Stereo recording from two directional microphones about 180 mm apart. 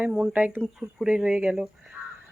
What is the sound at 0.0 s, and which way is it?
Speech, 10° right (ahead or behind).